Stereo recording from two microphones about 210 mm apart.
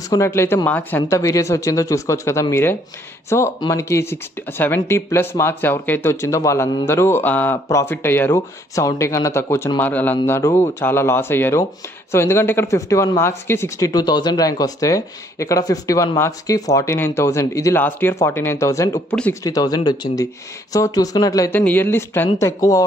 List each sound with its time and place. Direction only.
0.1 s speech: 15° left (ahead or behind)